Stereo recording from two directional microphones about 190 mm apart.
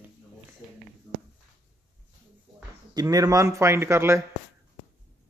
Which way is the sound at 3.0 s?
20° right (ahead or behind).